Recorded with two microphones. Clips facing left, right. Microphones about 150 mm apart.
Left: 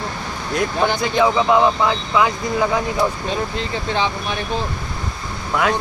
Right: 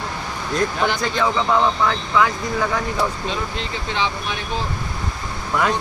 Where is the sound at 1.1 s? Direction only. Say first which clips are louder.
Left 6 dB; 10° left (ahead or behind).